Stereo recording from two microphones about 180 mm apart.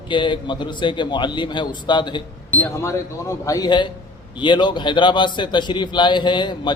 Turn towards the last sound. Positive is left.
turn(degrees=25)  # may be behind; listen again after turning